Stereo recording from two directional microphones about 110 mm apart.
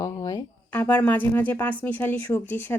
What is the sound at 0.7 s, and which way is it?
Speech, 15° left (ahead or behind).